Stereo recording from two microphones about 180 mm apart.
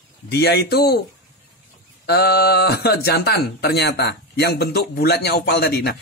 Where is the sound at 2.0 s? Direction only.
65° left (ahead or behind).